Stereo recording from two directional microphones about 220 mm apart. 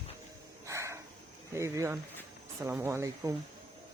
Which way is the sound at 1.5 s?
15° right (ahead or behind).